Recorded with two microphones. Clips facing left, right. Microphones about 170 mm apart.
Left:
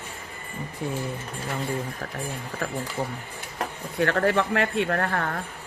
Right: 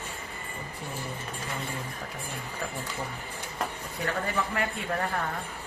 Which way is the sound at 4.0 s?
75° left (ahead or behind).